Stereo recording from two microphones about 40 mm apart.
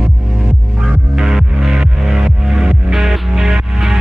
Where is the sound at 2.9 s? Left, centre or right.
Centre.